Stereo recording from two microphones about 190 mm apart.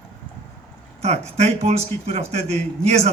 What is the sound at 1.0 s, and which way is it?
Speech, 35° right (ahead or behind).